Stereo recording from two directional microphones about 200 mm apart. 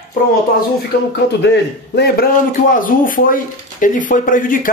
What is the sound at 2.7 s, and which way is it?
Speech, 45° left (ahead or behind).